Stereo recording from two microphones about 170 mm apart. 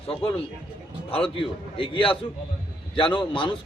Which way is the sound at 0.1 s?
35° left (ahead or behind).